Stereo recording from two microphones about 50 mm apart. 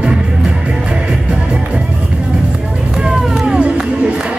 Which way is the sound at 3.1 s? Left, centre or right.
Centre.